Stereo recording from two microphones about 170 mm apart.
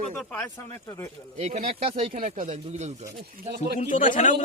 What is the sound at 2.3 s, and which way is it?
Speech, 45° right (ahead or behind).